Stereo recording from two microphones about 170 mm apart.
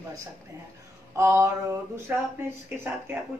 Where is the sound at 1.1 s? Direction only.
15° right (ahead or behind).